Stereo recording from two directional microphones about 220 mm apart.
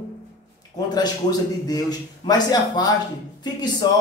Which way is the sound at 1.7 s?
20° left (ahead or behind).